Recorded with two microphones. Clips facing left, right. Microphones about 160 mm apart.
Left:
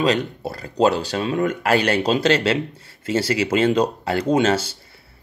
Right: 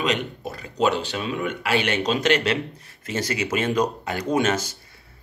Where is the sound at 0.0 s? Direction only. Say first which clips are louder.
Left 5 dB; 35° left (ahead or behind).